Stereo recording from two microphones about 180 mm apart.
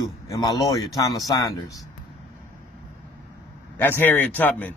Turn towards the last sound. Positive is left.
turn(degrees=10)  # may be behind; listen again after turning